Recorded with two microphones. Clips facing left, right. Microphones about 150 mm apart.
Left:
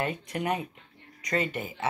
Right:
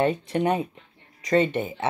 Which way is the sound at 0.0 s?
30° right (ahead or behind).